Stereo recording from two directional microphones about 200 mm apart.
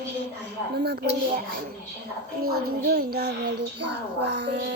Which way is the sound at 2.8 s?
50° right (ahead or behind).